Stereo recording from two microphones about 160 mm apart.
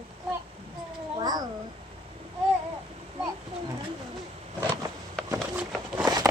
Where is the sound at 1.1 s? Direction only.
25° right (ahead or behind).